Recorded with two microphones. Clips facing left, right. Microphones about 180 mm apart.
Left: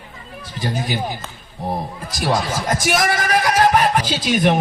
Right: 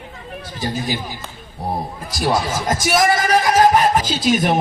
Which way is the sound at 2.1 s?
45° right (ahead or behind).